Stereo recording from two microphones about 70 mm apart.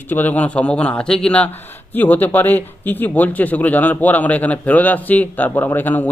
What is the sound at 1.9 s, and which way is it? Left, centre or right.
Speech, left.